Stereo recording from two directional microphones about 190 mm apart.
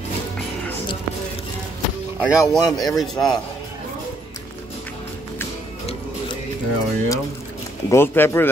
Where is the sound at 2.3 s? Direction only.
20° left (ahead or behind).